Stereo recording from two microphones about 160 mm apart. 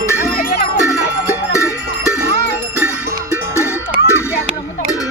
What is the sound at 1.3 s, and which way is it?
Music, 20° left (ahead or behind).